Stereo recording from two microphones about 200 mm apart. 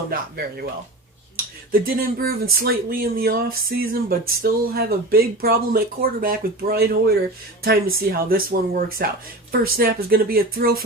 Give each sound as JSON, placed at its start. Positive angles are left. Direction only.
{"t": 0.1, "sound": "speech", "side_deg": -50}
{"t": 1.7, "sound": "speech", "side_deg": -45}